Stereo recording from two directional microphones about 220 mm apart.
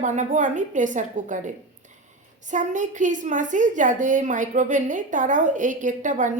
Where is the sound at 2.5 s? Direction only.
35° right (ahead or behind).